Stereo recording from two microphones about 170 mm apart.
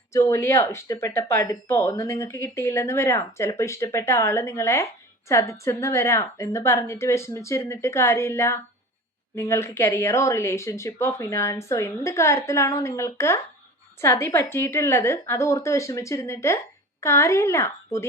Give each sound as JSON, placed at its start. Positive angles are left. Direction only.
{"t": 0.1, "sound": "speech", "side_deg": 15}